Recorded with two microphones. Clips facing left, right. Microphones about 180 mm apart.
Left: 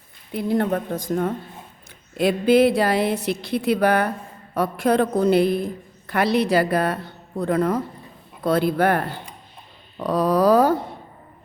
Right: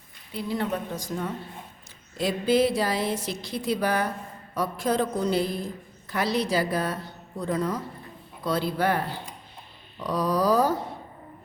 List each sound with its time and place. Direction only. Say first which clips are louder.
0.3 s a woman's voice: left 7 dB; 55° left (ahead or behind)